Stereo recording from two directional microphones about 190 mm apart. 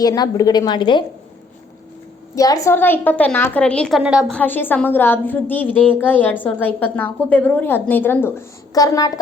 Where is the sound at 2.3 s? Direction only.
15° left (ahead or behind); by 4.4 s 5° right (ahead or behind).